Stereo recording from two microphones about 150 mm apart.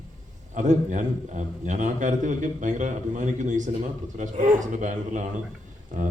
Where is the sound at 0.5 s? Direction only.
55° right (ahead or behind).